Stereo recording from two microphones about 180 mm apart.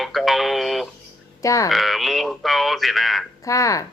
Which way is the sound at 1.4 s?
20° left (ahead or behind).